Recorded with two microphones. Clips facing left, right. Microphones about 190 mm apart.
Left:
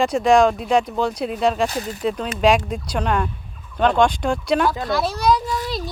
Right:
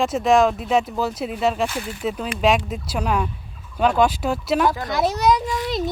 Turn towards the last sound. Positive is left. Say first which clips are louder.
# right 2 dB
turn(degrees=-20)  # may be behind; listen again after turning